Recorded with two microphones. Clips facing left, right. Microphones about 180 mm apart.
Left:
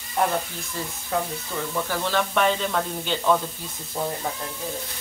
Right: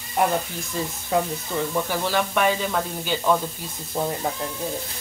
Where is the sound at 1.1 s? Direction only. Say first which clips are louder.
Right 4 dB; 15° right (ahead or behind).